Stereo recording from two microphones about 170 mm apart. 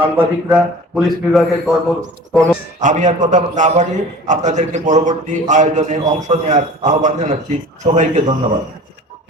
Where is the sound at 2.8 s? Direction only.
45° right (ahead or behind).